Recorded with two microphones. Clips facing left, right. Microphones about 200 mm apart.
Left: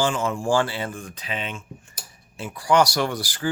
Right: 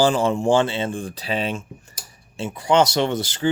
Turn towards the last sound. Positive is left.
turn(degrees=-25)  # may be behind; listen again after turning